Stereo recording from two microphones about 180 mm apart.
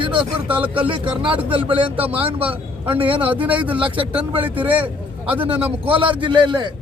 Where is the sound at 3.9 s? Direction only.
30° right (ahead or behind).